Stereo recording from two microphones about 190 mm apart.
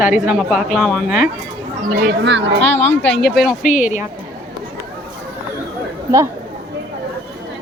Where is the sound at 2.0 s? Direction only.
70° right (ahead or behind).